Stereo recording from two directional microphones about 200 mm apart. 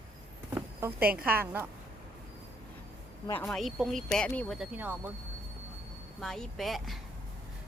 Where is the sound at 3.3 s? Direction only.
5° left (ahead or behind).